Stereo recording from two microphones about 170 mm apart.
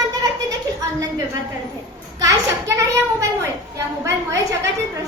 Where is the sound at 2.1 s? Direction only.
20° right (ahead or behind).